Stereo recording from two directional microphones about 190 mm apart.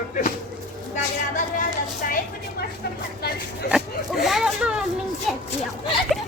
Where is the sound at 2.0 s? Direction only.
45° left (ahead or behind).